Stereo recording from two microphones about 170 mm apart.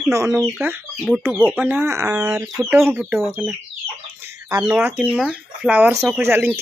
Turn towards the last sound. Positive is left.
turn(degrees=-15)  # may be behind; listen again after turning